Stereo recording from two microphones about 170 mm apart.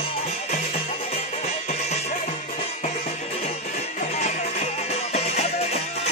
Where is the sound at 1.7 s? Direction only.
40° left (ahead or behind).